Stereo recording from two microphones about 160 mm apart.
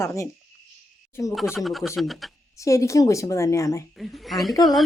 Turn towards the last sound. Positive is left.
turn(degrees=0)  # may be behind; listen again after turning